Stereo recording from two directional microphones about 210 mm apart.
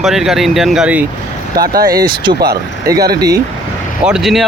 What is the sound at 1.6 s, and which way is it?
Speech, 45° right (ahead or behind).